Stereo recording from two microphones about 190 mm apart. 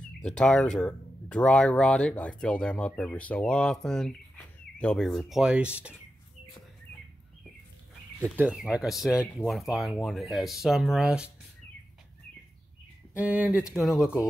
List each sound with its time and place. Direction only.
0.2 s speech: 5° left (ahead or behind)
8.2 s speech: 5° right (ahead or behind)
13.1 s speech: 10° right (ahead or behind)